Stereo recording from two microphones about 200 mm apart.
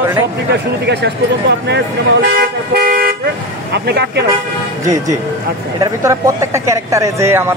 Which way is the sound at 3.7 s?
55° right (ahead or behind).